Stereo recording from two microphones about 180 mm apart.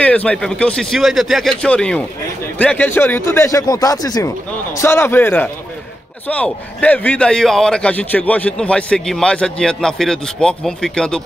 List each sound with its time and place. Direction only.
0.0 s a man's voice: 5° left (ahead or behind)